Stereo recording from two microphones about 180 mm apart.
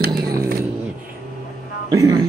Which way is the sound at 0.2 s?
15° right (ahead or behind).